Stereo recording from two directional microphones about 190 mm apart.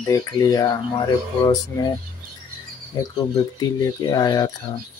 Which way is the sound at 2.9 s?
20° left (ahead or behind).